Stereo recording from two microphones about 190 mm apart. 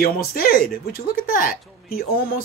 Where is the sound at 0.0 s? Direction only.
50° left (ahead or behind).